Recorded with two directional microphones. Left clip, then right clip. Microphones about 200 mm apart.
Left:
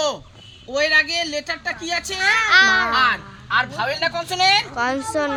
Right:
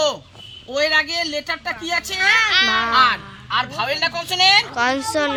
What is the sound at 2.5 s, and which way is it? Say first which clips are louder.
Speech: left 3 dB; 35° left (ahead or behind).